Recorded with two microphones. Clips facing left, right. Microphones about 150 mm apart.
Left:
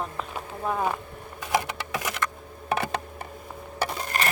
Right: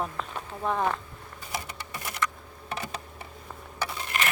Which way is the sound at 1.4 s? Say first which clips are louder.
Left 10 dB; 90° left.